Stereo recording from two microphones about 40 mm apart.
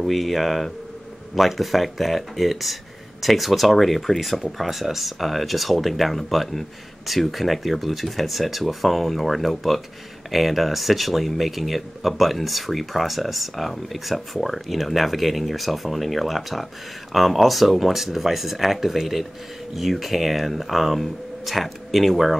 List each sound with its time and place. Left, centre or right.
0.0 s speech: centre